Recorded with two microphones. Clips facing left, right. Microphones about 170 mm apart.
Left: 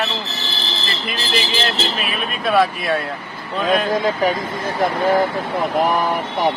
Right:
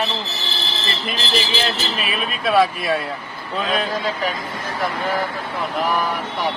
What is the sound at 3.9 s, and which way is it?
Speech, 45° left (ahead or behind).